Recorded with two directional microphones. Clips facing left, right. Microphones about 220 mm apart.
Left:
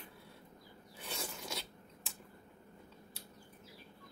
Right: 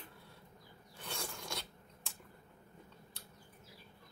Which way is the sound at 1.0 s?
5° left (ahead or behind).